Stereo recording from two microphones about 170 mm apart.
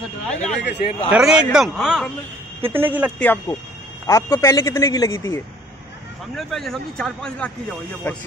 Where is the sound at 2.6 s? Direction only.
10° right (ahead or behind).